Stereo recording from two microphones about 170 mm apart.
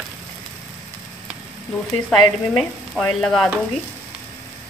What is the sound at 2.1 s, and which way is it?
Frying, centre (ahead or behind).